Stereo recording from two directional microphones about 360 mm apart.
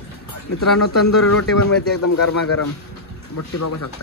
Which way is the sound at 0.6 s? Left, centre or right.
Left.